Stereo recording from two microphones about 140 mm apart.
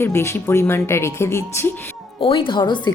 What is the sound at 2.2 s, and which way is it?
Speech, 40° left (ahead or behind).